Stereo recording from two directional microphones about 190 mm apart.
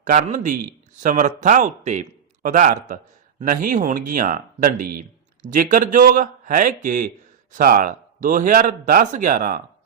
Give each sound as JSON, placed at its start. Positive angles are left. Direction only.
{"t": 0.0, "sound": "a man's voice", "side_deg": -45}